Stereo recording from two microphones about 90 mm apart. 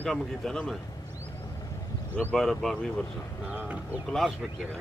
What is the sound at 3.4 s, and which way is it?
Speech, 15° right (ahead or behind).